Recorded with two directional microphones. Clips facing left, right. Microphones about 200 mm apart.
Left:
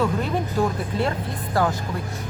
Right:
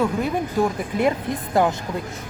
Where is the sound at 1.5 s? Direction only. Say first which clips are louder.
Right 3 dB; 20° right (ahead or behind).